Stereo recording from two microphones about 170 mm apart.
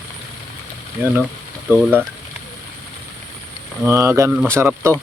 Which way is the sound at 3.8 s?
15° right (ahead or behind).